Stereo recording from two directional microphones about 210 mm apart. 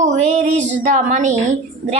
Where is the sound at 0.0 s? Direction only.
35° right (ahead or behind).